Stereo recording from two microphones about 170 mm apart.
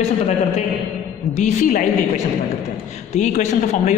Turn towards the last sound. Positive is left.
turn(degrees=45)  # may be behind; listen again after turning